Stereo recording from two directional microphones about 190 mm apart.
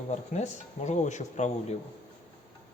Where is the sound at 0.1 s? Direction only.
35° left (ahead or behind).